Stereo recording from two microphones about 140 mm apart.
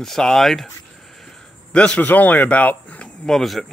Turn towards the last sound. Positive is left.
turn(degrees=0)  # may be behind; listen again after turning